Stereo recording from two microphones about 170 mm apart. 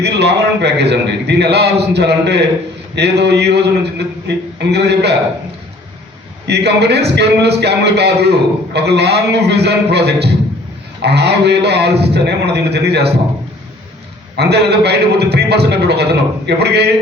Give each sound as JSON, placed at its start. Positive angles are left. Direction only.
{"t": 0.0, "sound": "a man's voice", "side_deg": -80}
{"t": 6.5, "sound": "a man's voice", "side_deg": -75}
{"t": 14.3, "sound": "a man's voice", "side_deg": -75}